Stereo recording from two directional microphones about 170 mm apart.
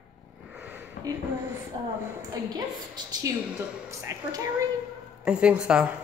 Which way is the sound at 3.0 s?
25° right (ahead or behind).